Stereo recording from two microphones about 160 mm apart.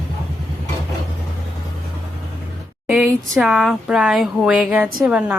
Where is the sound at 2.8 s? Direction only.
Centre (ahead or behind).